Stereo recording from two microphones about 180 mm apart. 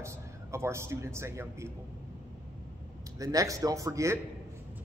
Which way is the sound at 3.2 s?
20° right (ahead or behind).